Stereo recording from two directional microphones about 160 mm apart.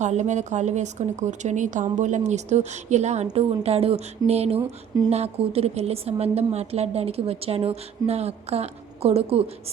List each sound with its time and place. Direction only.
0.0 s a woman's voice: 45° right (ahead or behind)